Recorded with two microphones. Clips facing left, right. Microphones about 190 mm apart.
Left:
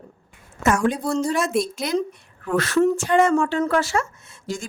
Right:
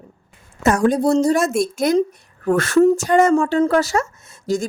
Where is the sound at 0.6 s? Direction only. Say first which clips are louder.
Right 5 dB; 35° right (ahead or behind).